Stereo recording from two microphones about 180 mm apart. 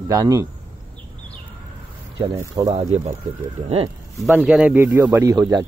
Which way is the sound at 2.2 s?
20° right (ahead or behind).